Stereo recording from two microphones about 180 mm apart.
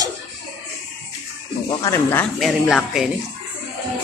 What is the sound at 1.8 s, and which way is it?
Speech, 10° left (ahead or behind).